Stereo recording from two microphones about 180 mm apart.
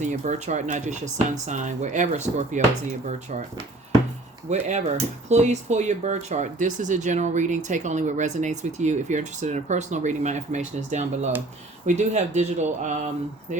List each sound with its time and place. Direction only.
0.0 s speech: 45° right (ahead or behind)
4.4 s speech: 40° right (ahead or behind)